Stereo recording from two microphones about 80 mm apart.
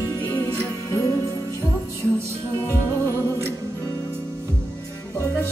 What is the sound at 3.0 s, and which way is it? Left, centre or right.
Music, right.